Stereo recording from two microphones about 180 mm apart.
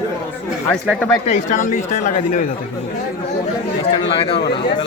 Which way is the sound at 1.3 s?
45° left (ahead or behind).